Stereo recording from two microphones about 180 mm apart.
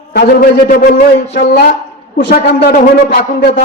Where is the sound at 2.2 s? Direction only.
65° left (ahead or behind).